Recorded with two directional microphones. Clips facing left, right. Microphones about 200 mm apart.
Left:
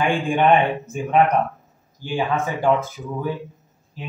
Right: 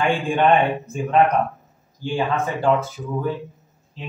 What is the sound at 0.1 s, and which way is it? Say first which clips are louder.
Speech: even; 15° left (ahead or behind).